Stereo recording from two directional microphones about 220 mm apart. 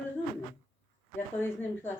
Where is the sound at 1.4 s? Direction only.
10° left (ahead or behind).